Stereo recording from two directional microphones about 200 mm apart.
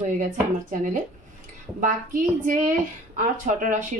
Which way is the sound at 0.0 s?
40° right (ahead or behind).